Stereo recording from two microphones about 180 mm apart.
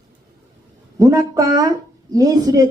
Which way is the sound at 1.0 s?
20° right (ahead or behind).